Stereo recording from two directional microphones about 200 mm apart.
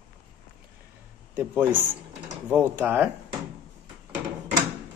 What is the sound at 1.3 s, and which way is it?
Speech, 10° right (ahead or behind).